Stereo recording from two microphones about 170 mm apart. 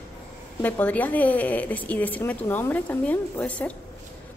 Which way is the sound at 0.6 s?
10° left (ahead or behind).